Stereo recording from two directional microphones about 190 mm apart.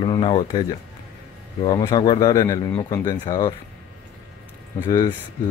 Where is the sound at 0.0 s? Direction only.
30° left (ahead or behind).